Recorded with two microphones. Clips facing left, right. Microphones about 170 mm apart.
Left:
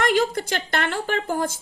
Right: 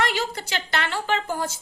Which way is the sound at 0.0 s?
50° left (ahead or behind).